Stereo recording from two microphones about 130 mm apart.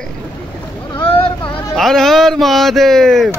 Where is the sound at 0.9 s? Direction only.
45° left (ahead or behind).